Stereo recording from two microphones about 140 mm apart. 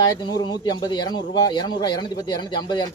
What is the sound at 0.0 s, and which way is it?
A man's voice, 30° left (ahead or behind).